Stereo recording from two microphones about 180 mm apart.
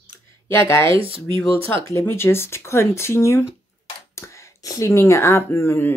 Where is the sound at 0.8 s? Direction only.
30° right (ahead or behind).